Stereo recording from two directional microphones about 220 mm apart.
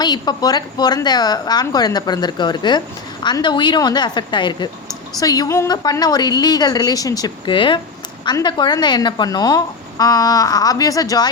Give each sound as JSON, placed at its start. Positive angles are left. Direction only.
{"t": 0.0, "sound": "a woman's voice", "side_deg": 20}